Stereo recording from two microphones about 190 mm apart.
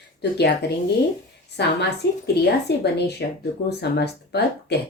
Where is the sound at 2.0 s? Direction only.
65° left (ahead or behind).